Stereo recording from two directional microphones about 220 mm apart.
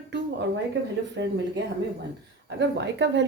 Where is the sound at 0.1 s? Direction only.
55° right (ahead or behind).